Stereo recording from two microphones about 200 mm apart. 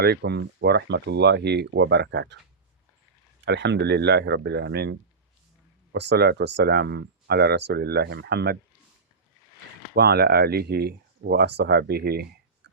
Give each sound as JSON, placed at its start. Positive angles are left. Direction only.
{"t": 0.0, "sound": "speech", "side_deg": -55}
{"t": 3.4, "sound": "speech", "side_deg": -60}
{"t": 9.9, "sound": "speech", "side_deg": -55}